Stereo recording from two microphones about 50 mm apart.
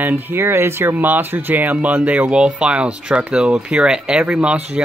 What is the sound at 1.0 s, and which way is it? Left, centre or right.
Speech, right.